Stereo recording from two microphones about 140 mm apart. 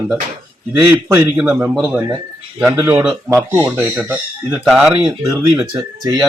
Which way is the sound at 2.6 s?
10° right (ahead or behind).